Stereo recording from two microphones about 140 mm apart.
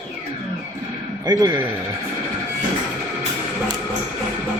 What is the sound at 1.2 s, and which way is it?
Speech, 25° right (ahead or behind).